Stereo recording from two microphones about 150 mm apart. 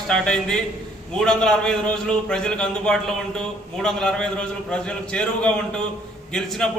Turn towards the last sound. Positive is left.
turn(degrees=5)  # may be behind; listen again after turning